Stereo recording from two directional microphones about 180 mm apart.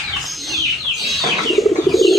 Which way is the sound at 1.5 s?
Centre (ahead or behind).